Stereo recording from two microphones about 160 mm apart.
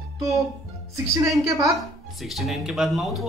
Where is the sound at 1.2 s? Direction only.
20° right (ahead or behind).